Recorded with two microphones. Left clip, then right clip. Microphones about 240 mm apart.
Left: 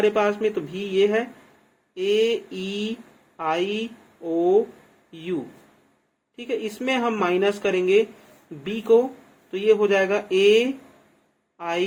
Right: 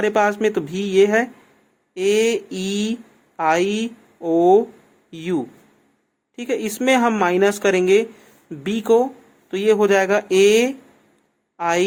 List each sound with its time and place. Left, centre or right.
0.0 s a woman's voice: right